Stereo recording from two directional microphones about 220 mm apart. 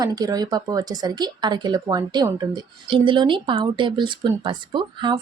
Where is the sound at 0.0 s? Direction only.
15° right (ahead or behind).